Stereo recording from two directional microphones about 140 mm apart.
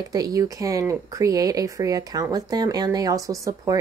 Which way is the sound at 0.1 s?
25° right (ahead or behind).